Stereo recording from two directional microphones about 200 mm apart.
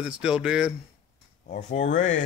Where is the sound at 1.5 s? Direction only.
35° left (ahead or behind).